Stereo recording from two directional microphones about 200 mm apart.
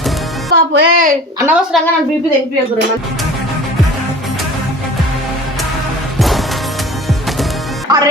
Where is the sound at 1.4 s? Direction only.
5° right (ahead or behind).